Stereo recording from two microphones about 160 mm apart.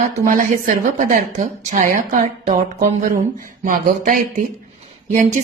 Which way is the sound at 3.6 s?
55° right (ahead or behind).